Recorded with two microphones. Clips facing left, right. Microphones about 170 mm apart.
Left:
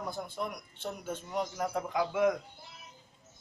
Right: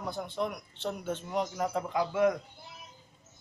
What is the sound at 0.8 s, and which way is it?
A man's voice, 10° left (ahead or behind).